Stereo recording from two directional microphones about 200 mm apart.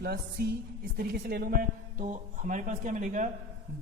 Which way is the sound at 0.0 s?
50° right (ahead or behind).